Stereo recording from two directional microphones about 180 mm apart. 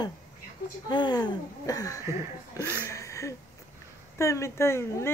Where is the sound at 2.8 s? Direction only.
15° left (ahead or behind).